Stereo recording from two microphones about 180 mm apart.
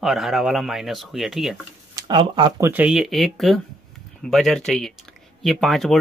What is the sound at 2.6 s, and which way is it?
Speech, 10° right (ahead or behind).